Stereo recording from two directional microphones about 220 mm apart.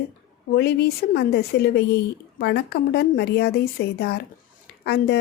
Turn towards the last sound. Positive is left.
turn(degrees=50)  # may be behind; listen again after turning